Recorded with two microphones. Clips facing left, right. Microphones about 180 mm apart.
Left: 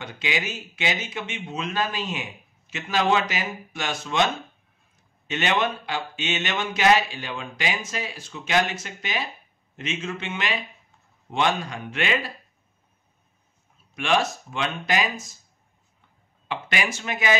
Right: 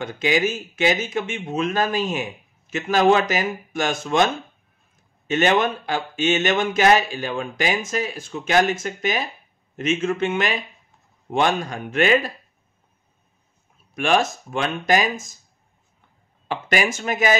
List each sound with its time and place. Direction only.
0.0 s speech: 45° right (ahead or behind)
5.3 s speech: 45° right (ahead or behind)
13.9 s speech: 45° right (ahead or behind)
16.4 s speech: 45° right (ahead or behind)